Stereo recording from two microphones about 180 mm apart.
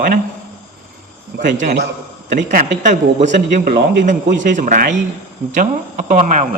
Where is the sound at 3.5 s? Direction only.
55° right (ahead or behind).